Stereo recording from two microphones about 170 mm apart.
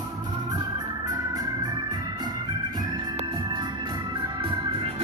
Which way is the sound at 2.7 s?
30° right (ahead or behind).